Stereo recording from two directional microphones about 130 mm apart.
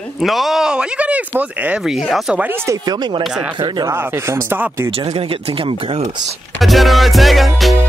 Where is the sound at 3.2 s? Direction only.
5° right (ahead or behind).